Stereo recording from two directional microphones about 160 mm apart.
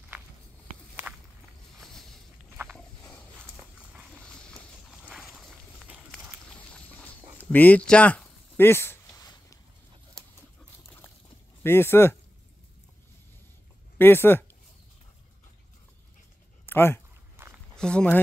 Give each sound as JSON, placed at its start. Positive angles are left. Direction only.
{"t": 1.8, "sound": "a sound", "side_deg": 0}
{"t": 2.5, "sound": "walk", "side_deg": -10}
{"t": 3.0, "sound": "a sound", "side_deg": 10}
{"t": 6.5, "sound": "dog", "side_deg": 5}
{"t": 11.6, "sound": "speech", "side_deg": 15}
{"t": 13.9, "sound": "speech", "side_deg": 15}
{"t": 16.6, "sound": "a sound", "side_deg": 15}
{"t": 17.4, "sound": "walk", "side_deg": -15}
{"t": 17.7, "sound": "speech", "side_deg": 5}